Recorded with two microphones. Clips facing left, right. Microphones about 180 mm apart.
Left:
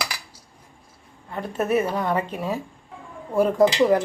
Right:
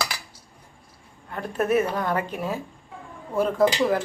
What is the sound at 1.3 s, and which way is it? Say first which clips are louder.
A woman's voice: even; 5° left (ahead or behind).